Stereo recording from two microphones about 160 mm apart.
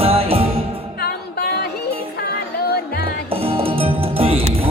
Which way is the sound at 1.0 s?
75° left (ahead or behind).